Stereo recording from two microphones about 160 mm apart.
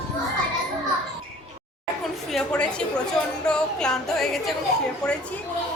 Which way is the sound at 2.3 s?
5° left (ahead or behind).